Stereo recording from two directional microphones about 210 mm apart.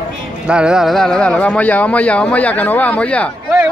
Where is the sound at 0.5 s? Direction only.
5° right (ahead or behind).